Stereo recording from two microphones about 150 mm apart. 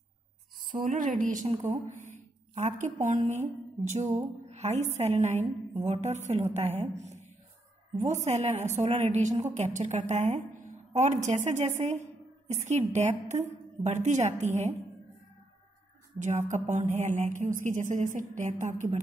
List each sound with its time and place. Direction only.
0.7 s a woman's voice: 65° right (ahead or behind)
16.2 s a woman's voice: 55° right (ahead or behind)